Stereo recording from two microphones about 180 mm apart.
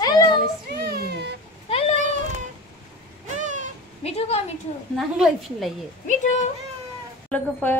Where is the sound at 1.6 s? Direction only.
30° left (ahead or behind).